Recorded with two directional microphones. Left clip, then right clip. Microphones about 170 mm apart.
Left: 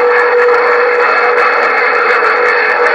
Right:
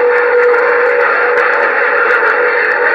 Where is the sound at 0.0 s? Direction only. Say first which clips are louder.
Left 1 dB; 50° left (ahead or behind).